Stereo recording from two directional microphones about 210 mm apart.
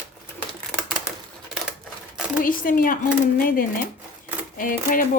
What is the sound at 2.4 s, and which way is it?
Speech, 40° left (ahead or behind).